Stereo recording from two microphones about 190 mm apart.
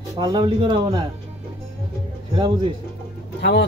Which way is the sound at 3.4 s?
60° left (ahead or behind).